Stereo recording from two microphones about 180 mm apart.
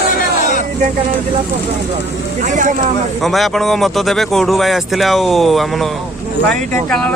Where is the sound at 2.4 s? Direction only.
45° right (ahead or behind).